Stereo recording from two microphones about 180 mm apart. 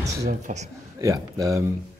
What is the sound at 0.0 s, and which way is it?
Speech, 40° right (ahead or behind).